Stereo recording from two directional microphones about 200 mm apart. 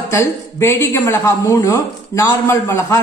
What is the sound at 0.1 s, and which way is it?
A woman's voice, 15° left (ahead or behind).